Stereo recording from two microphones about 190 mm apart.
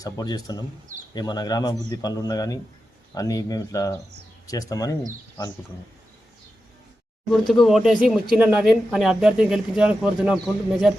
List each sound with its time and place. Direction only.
0.0 s speech: 20° left (ahead or behind)
7.3 s speech: centre (ahead or behind)